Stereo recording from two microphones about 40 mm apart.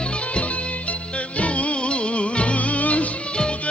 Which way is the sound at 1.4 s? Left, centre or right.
Left.